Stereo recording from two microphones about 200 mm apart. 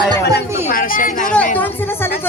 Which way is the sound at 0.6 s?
45° left (ahead or behind).